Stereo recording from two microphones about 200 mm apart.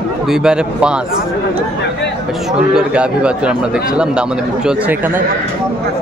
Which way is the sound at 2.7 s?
5° right (ahead or behind).